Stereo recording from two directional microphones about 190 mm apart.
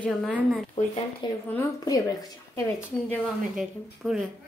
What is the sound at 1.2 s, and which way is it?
A woman's voice, 25° left (ahead or behind).